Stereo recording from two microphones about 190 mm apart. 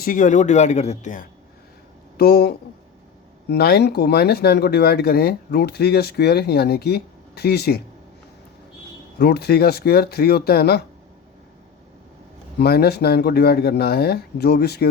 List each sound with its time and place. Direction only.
0.0 s speech: 45° left (ahead or behind)
2.1 s speech: 55° left (ahead or behind)
9.1 s speech: 55° left (ahead or behind)
12.5 s speech: 55° left (ahead or behind)